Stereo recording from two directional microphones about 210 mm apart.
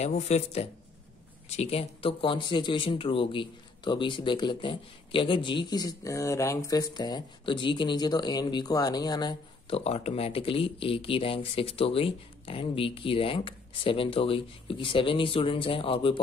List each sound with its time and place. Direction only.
0.0 s speech: 30° left (ahead or behind)